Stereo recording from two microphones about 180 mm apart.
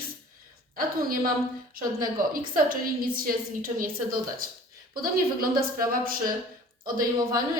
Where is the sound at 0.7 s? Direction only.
55° right (ahead or behind).